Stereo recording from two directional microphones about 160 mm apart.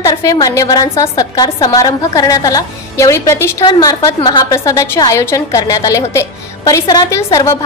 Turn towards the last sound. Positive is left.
turn(degrees=20)  # may be behind; listen again after turning